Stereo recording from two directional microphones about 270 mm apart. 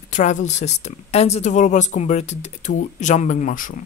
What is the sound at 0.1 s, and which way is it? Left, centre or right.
Speech, left.